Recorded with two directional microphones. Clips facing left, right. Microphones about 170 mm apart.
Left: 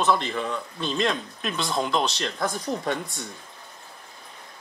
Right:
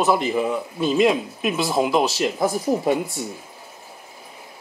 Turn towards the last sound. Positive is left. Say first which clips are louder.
# right 7 dB
turn(degrees=-5)  # may be behind; listen again after turning